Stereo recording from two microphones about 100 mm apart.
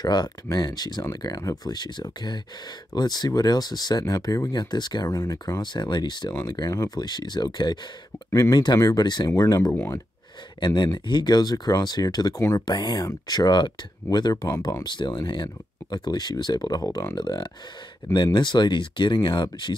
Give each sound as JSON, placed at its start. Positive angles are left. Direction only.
{"t": 0.0, "sound": "speech", "side_deg": 45}
{"t": 1.7, "sound": "speech", "side_deg": 45}
{"t": 8.3, "sound": "speech", "side_deg": 35}
{"t": 9.3, "sound": "speech", "side_deg": 30}
{"t": 10.6, "sound": "speech", "side_deg": 45}